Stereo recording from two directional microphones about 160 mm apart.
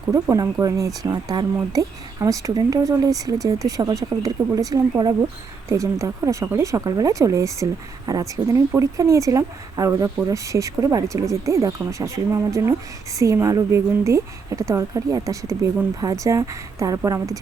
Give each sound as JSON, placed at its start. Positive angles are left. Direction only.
{"t": 0.1, "sound": "speech", "side_deg": -20}